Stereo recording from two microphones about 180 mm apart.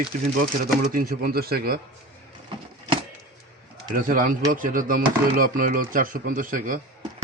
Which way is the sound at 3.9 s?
50° right (ahead or behind).